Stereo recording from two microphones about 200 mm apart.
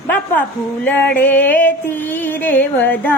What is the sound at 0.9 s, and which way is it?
Music, 5° left (ahead or behind).